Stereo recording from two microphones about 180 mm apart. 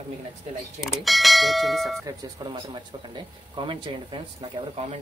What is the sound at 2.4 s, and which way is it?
Speech, 20° right (ahead or behind).